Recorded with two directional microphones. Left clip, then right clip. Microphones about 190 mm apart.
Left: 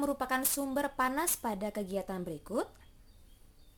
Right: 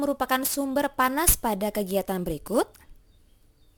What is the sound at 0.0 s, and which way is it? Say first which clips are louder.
A woman's voice: right 7 dB; 30° right (ahead or behind).